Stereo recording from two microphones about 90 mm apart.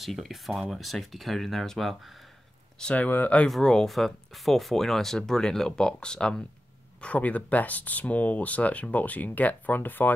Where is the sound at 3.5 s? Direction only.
5° left (ahead or behind).